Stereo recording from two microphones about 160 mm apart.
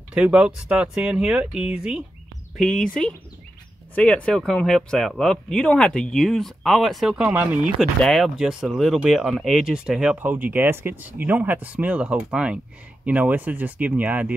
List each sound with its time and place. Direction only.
0.1 s speech: 5° right (ahead or behind)